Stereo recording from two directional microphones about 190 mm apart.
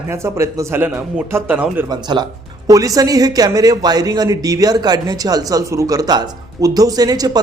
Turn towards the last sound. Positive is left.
turn(degrees=-20)  # may be behind; listen again after turning